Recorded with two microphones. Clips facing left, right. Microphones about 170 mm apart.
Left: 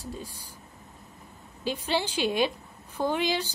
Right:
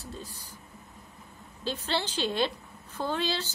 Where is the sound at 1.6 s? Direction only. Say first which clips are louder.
Left 3 dB; 10° left (ahead or behind).